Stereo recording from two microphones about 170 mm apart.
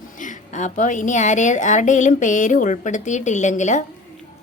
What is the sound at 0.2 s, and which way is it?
A woman's voice, 45° left (ahead or behind).